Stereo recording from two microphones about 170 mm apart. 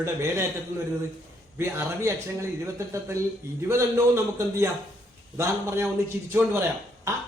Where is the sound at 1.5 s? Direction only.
15° right (ahead or behind).